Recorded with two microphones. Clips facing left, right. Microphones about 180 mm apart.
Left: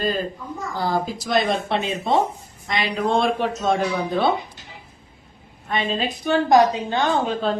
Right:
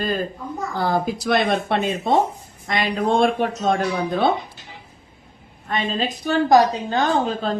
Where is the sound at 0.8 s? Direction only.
55° right (ahead or behind).